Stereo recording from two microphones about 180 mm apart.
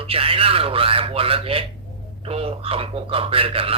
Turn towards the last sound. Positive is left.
turn(degrees=-30)  # may be behind; listen again after turning